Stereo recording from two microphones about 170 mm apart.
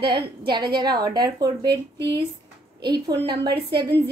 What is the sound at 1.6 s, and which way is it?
Speech, 90° right.